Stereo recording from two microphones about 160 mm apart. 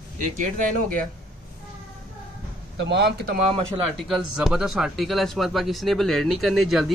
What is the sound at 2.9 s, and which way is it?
Speech, 90° right.